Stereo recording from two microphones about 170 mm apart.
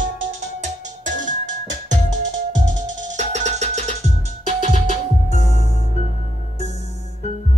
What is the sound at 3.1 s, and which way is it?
Music, 45° right (ahead or behind).